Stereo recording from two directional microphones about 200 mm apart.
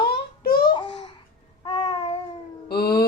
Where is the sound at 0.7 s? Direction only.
25° left (ahead or behind).